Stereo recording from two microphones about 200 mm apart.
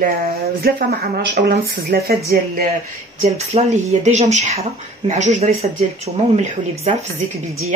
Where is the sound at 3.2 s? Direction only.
35° right (ahead or behind).